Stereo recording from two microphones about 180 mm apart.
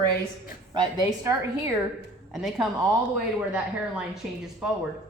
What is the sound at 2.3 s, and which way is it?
A woman's voice, centre (ahead or behind).